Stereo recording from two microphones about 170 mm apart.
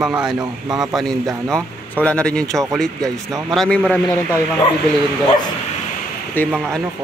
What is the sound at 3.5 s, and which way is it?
Speech, 5° left (ahead or behind).